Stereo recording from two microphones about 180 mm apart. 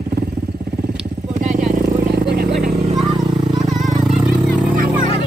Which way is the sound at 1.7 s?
55° right (ahead or behind).